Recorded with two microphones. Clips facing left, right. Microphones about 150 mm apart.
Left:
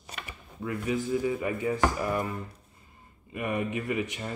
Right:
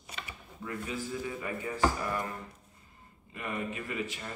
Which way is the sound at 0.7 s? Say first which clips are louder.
Left 7 dB; 15° left (ahead or behind).